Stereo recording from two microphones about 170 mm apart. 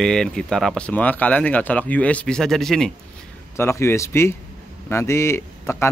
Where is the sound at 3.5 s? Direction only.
15° left (ahead or behind).